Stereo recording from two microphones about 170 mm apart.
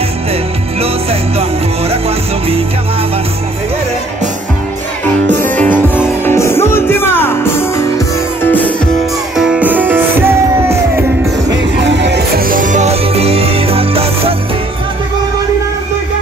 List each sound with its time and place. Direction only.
1.9 s music: 35° right (ahead or behind)
5.6 s music: 10° left (ahead or behind)
9.4 s music: 5° right (ahead or behind)
11.5 s music: 85° right
12.4 s music: 50° right (ahead or behind); by 14.3 s 35° right (ahead or behind)